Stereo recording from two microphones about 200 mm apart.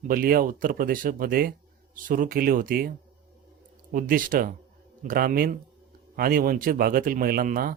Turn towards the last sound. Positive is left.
turn(degrees=-45)  # may be behind; listen again after turning